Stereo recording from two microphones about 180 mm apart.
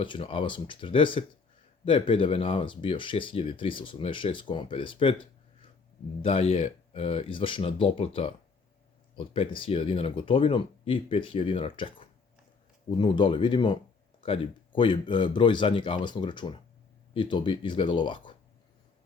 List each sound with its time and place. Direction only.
0.0 s speech: 30° left (ahead or behind)
6.2 s speech: 30° left (ahead or behind)